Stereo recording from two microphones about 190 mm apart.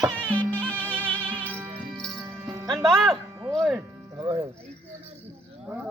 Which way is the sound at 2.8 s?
Centre (ahead or behind).